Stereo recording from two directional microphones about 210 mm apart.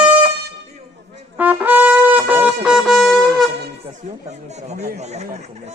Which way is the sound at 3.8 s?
35° right (ahead or behind).